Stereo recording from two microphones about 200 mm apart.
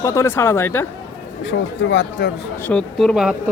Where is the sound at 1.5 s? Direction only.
70° left (ahead or behind).